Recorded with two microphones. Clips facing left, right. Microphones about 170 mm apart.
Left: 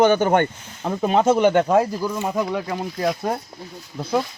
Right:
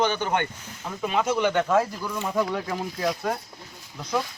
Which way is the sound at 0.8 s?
60° left (ahead or behind).